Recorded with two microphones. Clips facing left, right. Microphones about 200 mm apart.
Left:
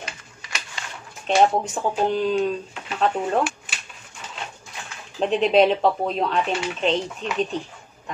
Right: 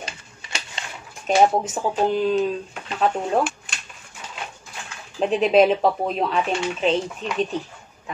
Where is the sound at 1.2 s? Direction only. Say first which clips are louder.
Right 1 dB; 5° right (ahead or behind).